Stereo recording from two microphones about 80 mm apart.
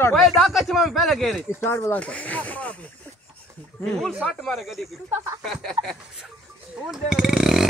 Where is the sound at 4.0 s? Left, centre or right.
Centre.